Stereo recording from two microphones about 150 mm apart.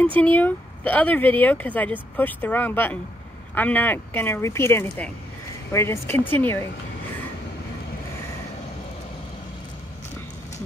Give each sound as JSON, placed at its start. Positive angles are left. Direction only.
{"t": 0.0, "sound": "speech", "side_deg": 10}